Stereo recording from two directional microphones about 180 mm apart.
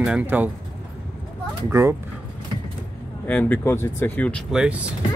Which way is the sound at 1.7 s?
15° right (ahead or behind).